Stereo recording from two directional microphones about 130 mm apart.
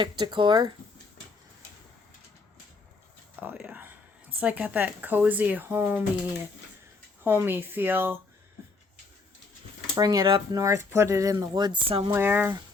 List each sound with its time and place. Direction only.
0.0 s speech: 35° right (ahead or behind)
3.4 s speech: 10° right (ahead or behind)
7.3 s speech: 15° right (ahead or behind)
9.9 s speech: 30° right (ahead or behind)
10.6 s speech: 25° right (ahead or behind)
11.9 s speech: 45° right (ahead or behind)
12.1 s speech: 15° right (ahead or behind)